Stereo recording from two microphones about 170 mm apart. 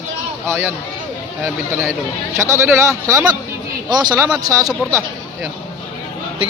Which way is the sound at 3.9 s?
25° right (ahead or behind).